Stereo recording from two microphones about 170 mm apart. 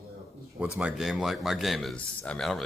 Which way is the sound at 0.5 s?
5° right (ahead or behind).